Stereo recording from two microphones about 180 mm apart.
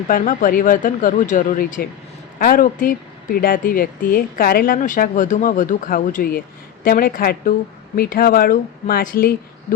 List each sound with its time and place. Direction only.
0.1 s speech: 45° left (ahead or behind)